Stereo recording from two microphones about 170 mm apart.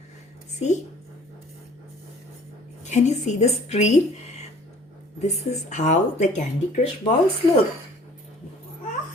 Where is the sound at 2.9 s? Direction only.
45° left (ahead or behind).